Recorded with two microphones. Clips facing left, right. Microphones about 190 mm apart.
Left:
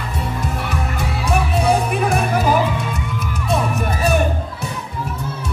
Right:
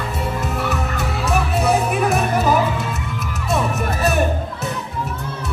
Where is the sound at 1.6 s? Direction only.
5° right (ahead or behind).